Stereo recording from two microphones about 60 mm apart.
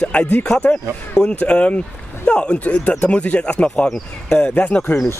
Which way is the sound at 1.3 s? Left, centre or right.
Left.